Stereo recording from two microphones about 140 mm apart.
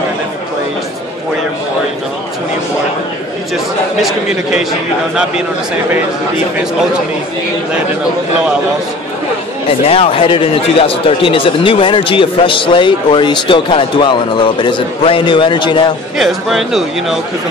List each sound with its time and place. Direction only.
9.8 s speech: 40° left (ahead or behind)
16.2 s a man's voice: centre (ahead or behind)